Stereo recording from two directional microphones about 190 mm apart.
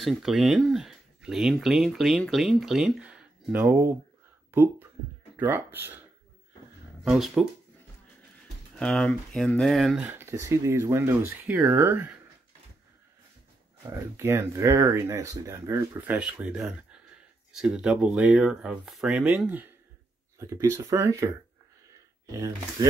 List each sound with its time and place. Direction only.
0.0 s speech: centre (ahead or behind)
7.0 s speech: centre (ahead or behind)
8.7 s speech: 5° left (ahead or behind)
13.8 s speech: 15° right (ahead or behind)
22.3 s speech: 20° right (ahead or behind)